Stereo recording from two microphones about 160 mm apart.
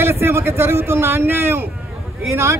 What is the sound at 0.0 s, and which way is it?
A man's voice, 15° right (ahead or behind).